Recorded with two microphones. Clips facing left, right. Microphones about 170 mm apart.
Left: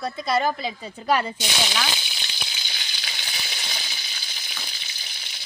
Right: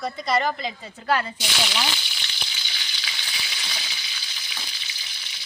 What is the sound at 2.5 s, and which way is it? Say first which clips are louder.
Frying: left 1 dB; 45° left (ahead or behind).